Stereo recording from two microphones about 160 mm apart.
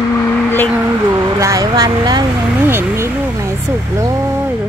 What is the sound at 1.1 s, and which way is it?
Speech, 20° right (ahead or behind).